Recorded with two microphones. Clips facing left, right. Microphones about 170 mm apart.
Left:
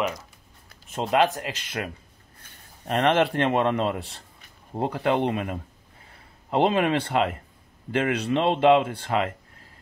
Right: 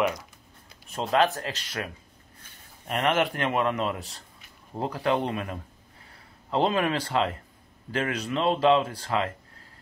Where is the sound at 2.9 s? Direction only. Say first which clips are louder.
Left 4 dB; 30° left (ahead or behind).